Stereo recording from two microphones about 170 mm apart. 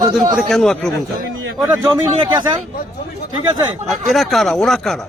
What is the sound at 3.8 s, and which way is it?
Speech, centre (ahead or behind).